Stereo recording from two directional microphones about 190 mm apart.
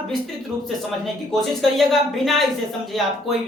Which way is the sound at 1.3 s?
Centre (ahead or behind).